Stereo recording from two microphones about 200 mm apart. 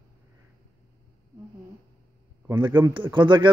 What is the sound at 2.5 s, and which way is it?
A man's voice, 15° right (ahead or behind).